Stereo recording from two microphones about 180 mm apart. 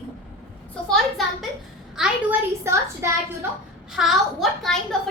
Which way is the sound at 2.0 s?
15° right (ahead or behind).